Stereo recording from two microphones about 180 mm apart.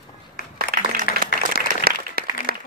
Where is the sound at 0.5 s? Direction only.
50° right (ahead or behind).